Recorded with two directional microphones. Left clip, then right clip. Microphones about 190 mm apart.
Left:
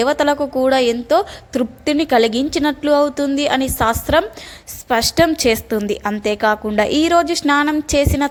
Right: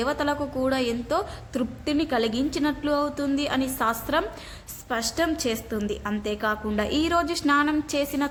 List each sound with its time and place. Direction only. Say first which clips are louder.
0.0 s a woman's voice: left 10 dB; 35° left (ahead or behind)